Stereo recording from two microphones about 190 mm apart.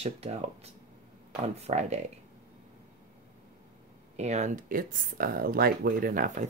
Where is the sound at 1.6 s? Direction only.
35° right (ahead or behind).